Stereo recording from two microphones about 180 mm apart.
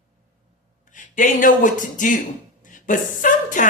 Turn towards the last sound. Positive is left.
turn(degrees=45)  # may be behind; listen again after turning